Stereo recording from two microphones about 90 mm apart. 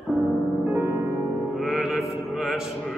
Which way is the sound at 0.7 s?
25° right (ahead or behind).